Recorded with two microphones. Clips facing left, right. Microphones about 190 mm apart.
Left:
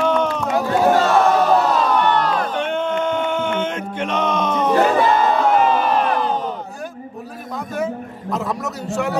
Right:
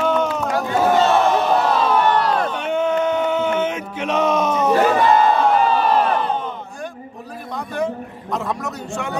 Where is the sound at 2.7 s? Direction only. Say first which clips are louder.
Right 2 dB; 5° right (ahead or behind).